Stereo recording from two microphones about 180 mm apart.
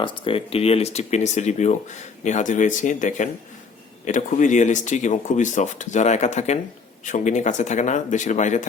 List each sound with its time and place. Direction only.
0.0 s speech: 30° left (ahead or behind)